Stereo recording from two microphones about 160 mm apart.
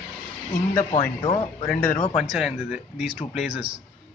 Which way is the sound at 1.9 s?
45° left (ahead or behind).